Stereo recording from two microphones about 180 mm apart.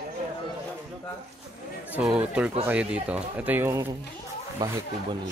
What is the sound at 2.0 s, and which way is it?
Speech, 10° right (ahead or behind).